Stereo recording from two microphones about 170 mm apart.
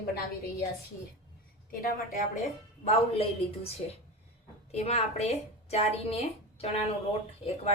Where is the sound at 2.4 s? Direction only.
40° left (ahead or behind).